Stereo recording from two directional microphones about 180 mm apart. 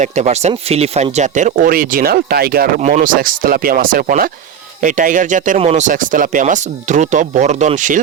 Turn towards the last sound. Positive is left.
turn(degrees=-45)  # may be behind; listen again after turning